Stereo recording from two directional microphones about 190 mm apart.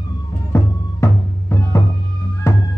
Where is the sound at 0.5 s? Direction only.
15° left (ahead or behind).